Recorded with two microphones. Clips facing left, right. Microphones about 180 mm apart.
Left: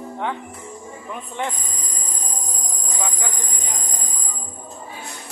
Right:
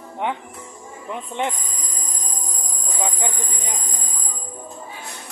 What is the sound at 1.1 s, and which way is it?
Speech, 20° right (ahead or behind).